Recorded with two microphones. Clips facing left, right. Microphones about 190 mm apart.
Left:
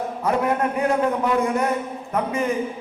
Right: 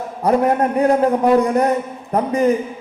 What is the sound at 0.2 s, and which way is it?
A man's voice, 40° right (ahead or behind).